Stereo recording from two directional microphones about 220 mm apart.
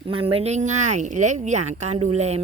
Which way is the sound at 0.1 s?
25° right (ahead or behind).